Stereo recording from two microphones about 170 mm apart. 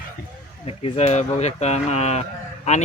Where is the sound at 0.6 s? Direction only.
35° left (ahead or behind).